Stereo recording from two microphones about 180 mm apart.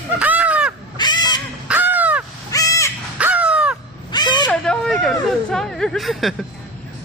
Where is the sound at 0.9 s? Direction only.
25° left (ahead or behind).